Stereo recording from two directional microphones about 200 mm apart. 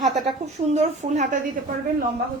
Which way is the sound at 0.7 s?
35° right (ahead or behind).